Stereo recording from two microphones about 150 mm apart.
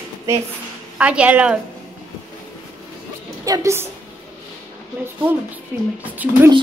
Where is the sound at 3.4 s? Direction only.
20° right (ahead or behind).